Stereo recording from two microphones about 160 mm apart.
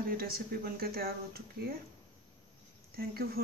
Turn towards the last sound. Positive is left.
turn(degrees=-70)  # may be behind; listen again after turning